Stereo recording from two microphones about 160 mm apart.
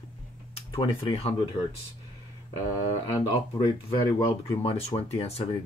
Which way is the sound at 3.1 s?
30° left (ahead or behind).